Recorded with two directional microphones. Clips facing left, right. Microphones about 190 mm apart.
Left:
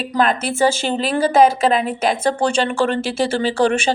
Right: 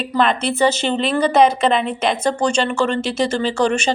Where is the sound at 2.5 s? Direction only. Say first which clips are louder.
Even; 55° left (ahead or behind).